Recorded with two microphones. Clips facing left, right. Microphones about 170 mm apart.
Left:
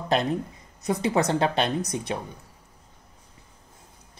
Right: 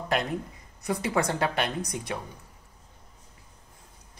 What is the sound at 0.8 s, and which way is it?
Speech, 20° left (ahead or behind).